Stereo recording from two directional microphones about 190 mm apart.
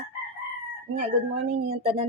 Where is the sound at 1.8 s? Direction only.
35° right (ahead or behind).